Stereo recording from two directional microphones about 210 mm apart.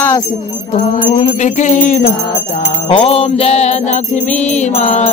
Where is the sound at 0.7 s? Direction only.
30° left (ahead or behind).